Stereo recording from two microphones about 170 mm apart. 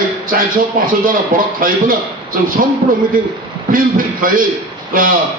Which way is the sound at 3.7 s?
55° right (ahead or behind).